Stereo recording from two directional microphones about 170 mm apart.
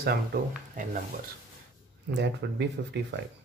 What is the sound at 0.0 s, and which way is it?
Speech, 70° right (ahead or behind).